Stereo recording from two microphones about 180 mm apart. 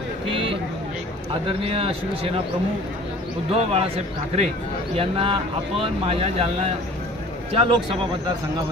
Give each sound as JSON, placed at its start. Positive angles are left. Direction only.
{"t": 0.3, "sound": "a sound", "side_deg": -30}
{"t": 1.5, "sound": "a man's voice", "side_deg": -30}
{"t": 3.5, "sound": "a man's voice", "side_deg": -35}